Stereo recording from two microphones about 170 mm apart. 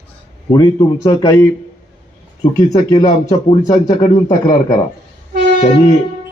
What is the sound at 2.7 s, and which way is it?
Speech, 25° left (ahead or behind).